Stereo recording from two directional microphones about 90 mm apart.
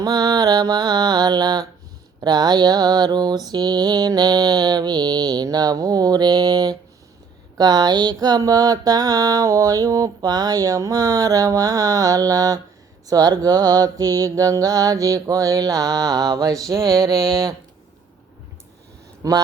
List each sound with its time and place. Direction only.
0.0 s mantra: 45° right (ahead or behind)
19.2 s speech: 40° right (ahead or behind)